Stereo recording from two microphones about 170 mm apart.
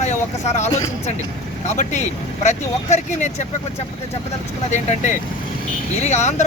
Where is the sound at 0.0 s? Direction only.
45° left (ahead or behind).